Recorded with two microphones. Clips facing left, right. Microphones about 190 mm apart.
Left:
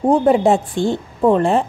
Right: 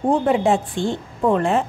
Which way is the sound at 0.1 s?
40° left (ahead or behind).